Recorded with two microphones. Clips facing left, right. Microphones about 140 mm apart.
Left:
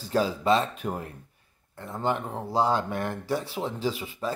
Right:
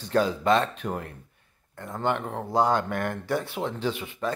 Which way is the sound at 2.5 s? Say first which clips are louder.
Right 1 dB; 30° left (ahead or behind).